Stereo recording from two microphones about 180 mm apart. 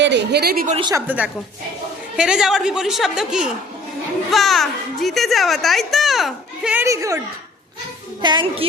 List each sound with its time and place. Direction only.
0.0 s a woman's voice: 75° right (ahead or behind); by 0.8 s 50° right (ahead or behind)
0.8 s a child's voice: 25° right (ahead or behind)
1.0 s a woman's voice: 10° right (ahead or behind)
6.8 s a woman's voice: 15° right (ahead or behind)
8.2 s a child's voice: 25° right (ahead or behind)